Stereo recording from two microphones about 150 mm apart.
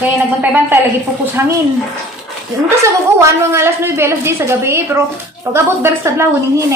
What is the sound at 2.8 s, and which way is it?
A woman's voice, 20° right (ahead or behind).